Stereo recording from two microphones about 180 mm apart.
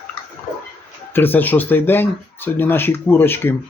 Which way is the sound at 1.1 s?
10° left (ahead or behind).